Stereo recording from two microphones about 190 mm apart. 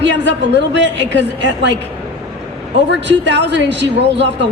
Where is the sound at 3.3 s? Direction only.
70° right (ahead or behind).